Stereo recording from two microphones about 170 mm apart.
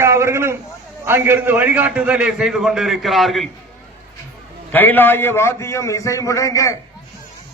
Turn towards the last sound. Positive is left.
turn(degrees=20)  # may be behind; listen again after turning